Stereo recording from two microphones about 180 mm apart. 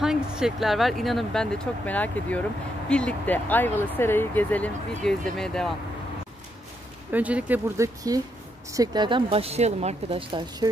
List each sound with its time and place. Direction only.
0.0 s speech: 5° right (ahead or behind)
7.1 s speech: 10° right (ahead or behind); by 10.7 s 25° right (ahead or behind)